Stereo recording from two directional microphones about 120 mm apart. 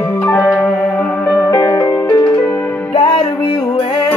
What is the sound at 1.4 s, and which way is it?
Music, 30° left (ahead or behind).